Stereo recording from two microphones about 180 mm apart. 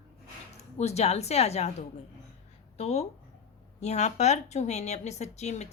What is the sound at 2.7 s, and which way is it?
Speech, 35° left (ahead or behind).